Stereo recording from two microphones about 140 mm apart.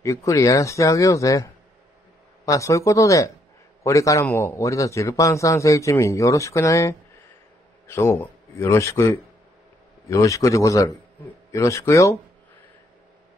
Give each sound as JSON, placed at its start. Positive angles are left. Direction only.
{"t": 0.0, "sound": "a man's voice", "side_deg": 20}